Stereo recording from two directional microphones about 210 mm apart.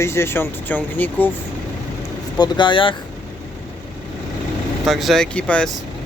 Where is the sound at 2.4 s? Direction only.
20° left (ahead or behind).